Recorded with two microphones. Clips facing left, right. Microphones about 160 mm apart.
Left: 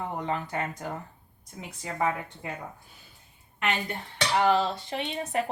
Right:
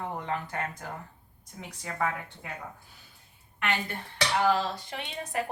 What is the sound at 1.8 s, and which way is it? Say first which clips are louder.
Speech: left 3 dB; 15° left (ahead or behind).